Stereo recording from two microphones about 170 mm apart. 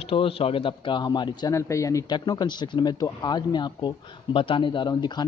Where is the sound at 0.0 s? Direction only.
35° left (ahead or behind).